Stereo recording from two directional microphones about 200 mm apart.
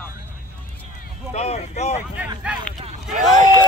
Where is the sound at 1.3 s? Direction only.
35° left (ahead or behind).